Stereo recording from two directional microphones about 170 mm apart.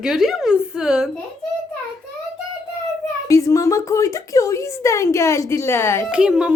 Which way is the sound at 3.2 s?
20° left (ahead or behind).